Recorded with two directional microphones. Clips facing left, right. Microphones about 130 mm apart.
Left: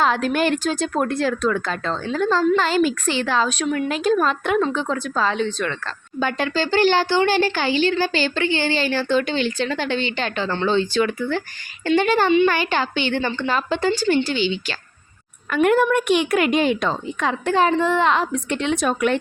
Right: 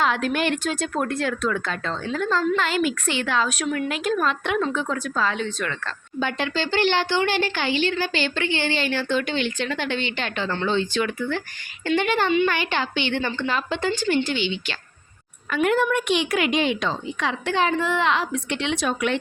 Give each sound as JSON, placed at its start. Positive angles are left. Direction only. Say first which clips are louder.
{"t": 0.0, "sound": "speech", "louder": "left 3 dB", "side_deg": 35}
{"t": 4.6, "sound": "speech", "louder": "left 3 dB", "side_deg": 30}
{"t": 6.1, "sound": "speech", "louder": "left 3 dB", "side_deg": 45}
{"t": 15.4, "sound": "a woman's voice", "louder": "left 4 dB", "side_deg": 50}